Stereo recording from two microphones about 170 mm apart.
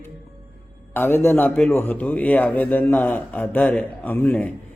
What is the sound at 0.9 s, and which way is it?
A man's voice, 10° left (ahead or behind).